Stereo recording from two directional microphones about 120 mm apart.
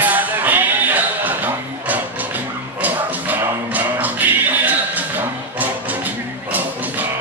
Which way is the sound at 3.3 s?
15° right (ahead or behind).